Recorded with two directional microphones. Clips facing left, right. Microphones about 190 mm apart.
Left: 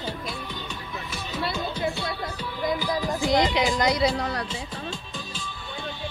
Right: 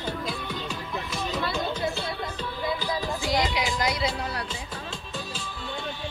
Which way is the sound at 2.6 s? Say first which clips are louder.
Left 4 dB; 15° left (ahead or behind).